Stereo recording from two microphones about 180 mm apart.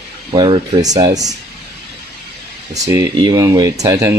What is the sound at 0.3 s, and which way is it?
Speech, 25° right (ahead or behind).